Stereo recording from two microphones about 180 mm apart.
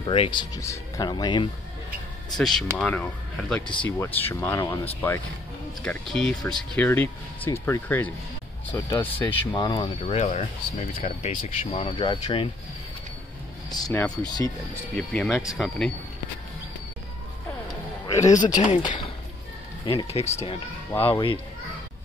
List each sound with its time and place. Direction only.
0.0 s speech: 30° left (ahead or behind)
2.3 s speech: centre (ahead or behind)
5.8 s speech: 5° left (ahead or behind)
9.7 s speech: 25° left (ahead or behind)
13.7 s speech: 20° left (ahead or behind)
15.0 s speech: centre (ahead or behind)
18.0 s a sound: 20° left (ahead or behind)
18.4 s speech: 40° left (ahead or behind)
19.8 s speech: 25° left (ahead or behind)
20.1 s speech: 35° left (ahead or behind)